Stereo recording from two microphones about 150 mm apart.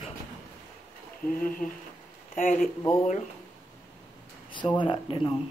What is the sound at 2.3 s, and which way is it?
Speech, 60° left (ahead or behind).